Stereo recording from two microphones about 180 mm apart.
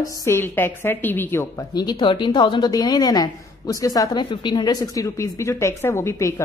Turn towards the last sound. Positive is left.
turn(degrees=15)  # may be behind; listen again after turning